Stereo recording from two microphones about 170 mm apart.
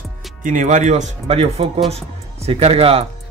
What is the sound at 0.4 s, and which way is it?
Speech, 50° right (ahead or behind).